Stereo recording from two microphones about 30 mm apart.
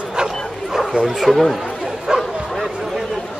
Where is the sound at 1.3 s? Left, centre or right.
Left.